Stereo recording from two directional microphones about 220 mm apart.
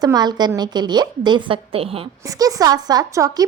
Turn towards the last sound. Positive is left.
turn(degrees=-15)  # may be behind; listen again after turning